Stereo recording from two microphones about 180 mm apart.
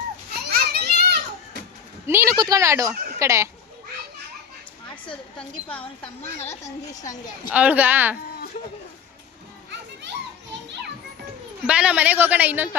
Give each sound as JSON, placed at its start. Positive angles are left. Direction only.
{"t": 0.4, "sound": "children playing", "side_deg": -60}
{"t": 2.0, "sound": "speech", "side_deg": -15}
{"t": 6.4, "sound": "speech", "side_deg": 40}
{"t": 6.9, "sound": "a woman's voice", "side_deg": 20}
{"t": 7.5, "sound": "speech", "side_deg": -10}
{"t": 10.5, "sound": "children playing", "side_deg": -75}
{"t": 11.6, "sound": "speech", "side_deg": -5}